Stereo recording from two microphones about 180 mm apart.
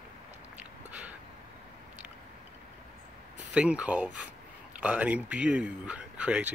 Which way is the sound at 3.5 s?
5° right (ahead or behind).